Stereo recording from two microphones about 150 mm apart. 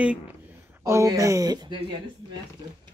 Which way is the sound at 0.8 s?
20° right (ahead or behind).